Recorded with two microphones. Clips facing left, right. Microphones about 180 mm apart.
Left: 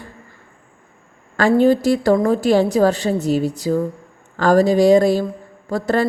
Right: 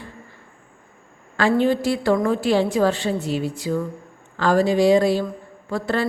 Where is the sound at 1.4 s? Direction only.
45° left (ahead or behind).